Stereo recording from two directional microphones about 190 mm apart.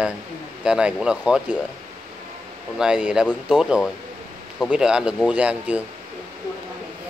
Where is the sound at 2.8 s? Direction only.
5° right (ahead or behind).